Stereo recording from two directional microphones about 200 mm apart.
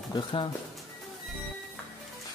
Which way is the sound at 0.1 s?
25° left (ahead or behind).